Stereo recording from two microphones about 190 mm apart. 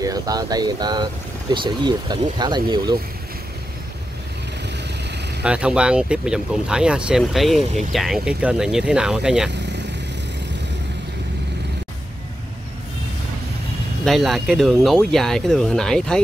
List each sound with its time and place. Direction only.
0.0 s speech: 20° right (ahead or behind)
5.4 s speech: 5° right (ahead or behind)
14.0 s speech: centre (ahead or behind)